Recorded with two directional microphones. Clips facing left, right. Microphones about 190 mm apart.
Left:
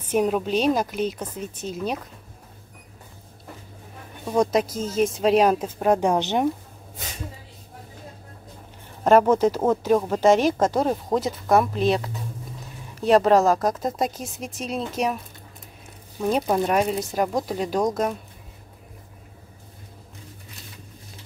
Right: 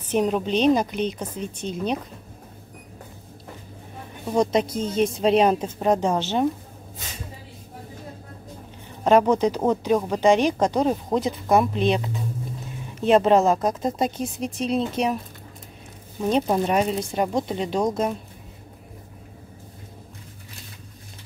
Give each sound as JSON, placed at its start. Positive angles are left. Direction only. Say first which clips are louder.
{"t": 0.1, "sound": "a woman's voice", "louder": "even", "side_deg": 5}
{"t": 4.7, "sound": "a woman's voice", "louder": "even", "side_deg": 5}
{"t": 9.0, "sound": "a woman's voice", "louder": "left 1 dB", "side_deg": 5}
{"t": 13.0, "sound": "a woman's voice", "louder": "even", "side_deg": 0}
{"t": 16.2, "sound": "a woman's voice", "louder": "right 1 dB", "side_deg": 5}